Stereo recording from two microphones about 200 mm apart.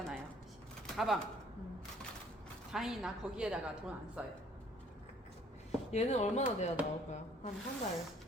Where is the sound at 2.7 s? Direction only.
Centre (ahead or behind).